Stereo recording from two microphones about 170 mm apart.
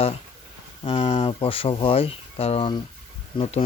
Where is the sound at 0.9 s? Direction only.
40° left (ahead or behind).